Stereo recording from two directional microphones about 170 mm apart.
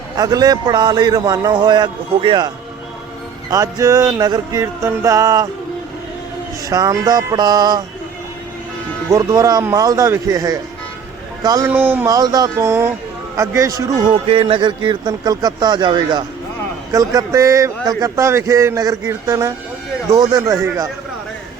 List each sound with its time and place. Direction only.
0.2 s a man's voice: 20° right (ahead or behind)
3.5 s a man's voice: 20° right (ahead or behind)
6.7 s a man's voice: 20° right (ahead or behind)
9.0 s a man's voice: 20° right (ahead or behind)
14.1 s a man's voice: 30° right (ahead or behind)